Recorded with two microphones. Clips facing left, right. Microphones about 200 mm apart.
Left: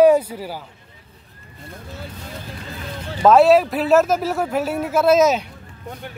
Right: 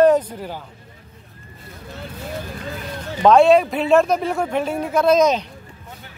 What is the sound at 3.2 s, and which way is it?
Speech, 5° left (ahead or behind).